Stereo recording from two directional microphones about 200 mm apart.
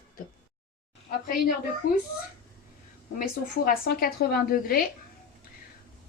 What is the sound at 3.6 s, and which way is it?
Speech, 50° left (ahead or behind).